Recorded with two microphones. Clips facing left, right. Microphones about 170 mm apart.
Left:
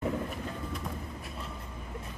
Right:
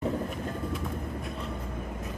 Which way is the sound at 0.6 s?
Centre (ahead or behind).